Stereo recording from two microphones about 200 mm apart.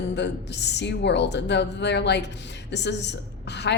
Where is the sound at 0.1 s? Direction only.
60° left (ahead or behind).